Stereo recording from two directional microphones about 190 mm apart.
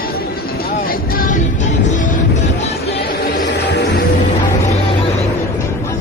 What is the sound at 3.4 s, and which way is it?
Music, 60° left (ahead or behind).